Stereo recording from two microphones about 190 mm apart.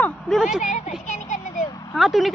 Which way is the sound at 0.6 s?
40° left (ahead or behind).